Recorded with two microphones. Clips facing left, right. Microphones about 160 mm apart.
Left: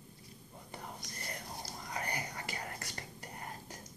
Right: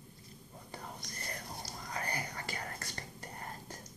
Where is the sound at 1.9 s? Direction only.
20° left (ahead or behind).